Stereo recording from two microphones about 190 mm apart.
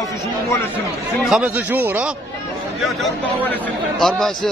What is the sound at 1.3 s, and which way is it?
A man's voice, 5° right (ahead or behind).